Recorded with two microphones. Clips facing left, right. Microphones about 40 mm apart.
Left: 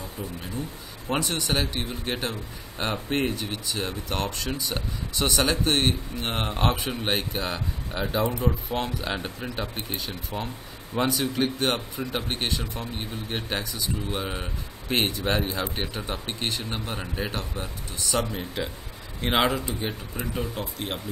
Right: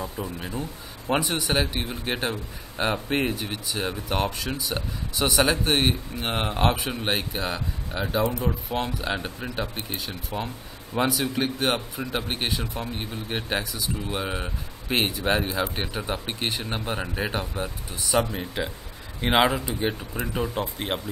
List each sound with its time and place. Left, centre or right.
1.0 s speech: centre